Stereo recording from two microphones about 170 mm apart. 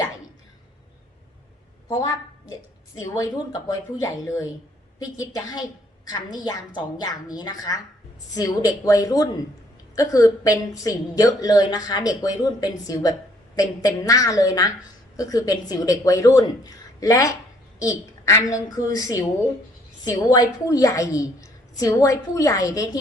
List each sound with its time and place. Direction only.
3.0 s a woman's voice: 20° left (ahead or behind)